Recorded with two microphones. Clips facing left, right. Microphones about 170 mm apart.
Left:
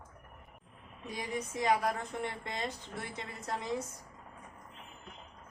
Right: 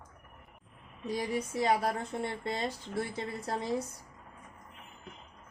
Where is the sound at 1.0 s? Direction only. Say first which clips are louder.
Right 5 dB; 35° right (ahead or behind).